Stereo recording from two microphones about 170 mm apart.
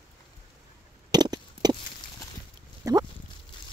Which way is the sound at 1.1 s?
25° right (ahead or behind).